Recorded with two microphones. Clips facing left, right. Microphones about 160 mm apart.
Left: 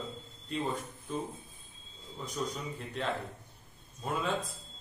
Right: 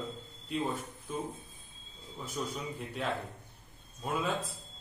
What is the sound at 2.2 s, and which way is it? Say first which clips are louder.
Speech: left 1 dB; 5° right (ahead or behind).